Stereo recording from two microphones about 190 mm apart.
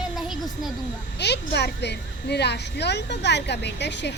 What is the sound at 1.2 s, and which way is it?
Speech, 60° left (ahead or behind).